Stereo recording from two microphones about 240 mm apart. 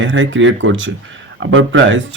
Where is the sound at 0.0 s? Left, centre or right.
Right.